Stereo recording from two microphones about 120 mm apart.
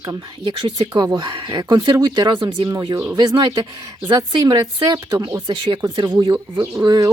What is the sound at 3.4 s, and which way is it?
Speech, 40° right (ahead or behind).